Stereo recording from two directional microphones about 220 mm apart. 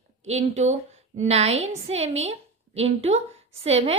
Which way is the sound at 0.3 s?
30° right (ahead or behind).